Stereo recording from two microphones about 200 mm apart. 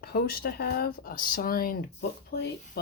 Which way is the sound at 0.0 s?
50° left (ahead or behind).